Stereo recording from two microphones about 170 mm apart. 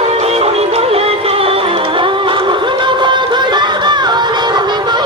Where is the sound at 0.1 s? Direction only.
35° right (ahead or behind).